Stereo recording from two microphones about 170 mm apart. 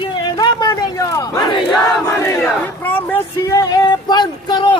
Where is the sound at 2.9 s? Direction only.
15° left (ahead or behind).